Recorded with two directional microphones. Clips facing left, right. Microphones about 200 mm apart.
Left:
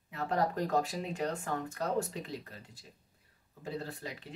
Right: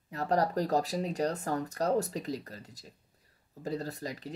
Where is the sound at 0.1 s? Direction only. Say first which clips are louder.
Right 3 dB; 40° right (ahead or behind).